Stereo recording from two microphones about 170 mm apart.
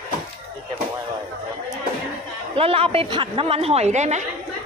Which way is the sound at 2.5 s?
35° right (ahead or behind).